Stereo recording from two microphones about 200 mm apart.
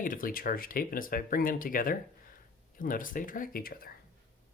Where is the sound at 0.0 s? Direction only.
45° left (ahead or behind).